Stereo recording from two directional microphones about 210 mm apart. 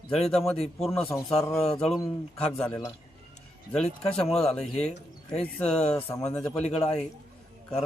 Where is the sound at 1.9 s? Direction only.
25° left (ahead or behind).